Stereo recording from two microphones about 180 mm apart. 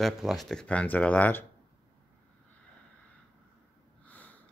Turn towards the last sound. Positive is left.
turn(degrees=10)  # may be behind; listen again after turning